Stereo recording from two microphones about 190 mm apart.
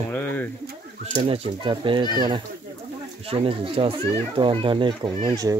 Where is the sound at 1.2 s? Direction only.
30° right (ahead or behind).